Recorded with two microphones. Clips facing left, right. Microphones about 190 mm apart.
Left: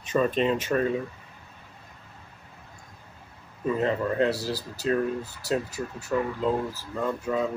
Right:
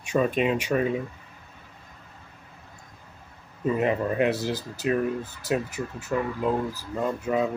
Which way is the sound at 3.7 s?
15° right (ahead or behind).